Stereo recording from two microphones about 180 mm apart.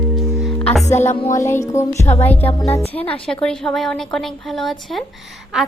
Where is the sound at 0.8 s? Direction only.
40° left (ahead or behind).